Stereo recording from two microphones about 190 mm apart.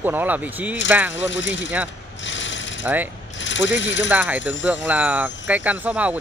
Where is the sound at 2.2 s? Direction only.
75° left (ahead or behind).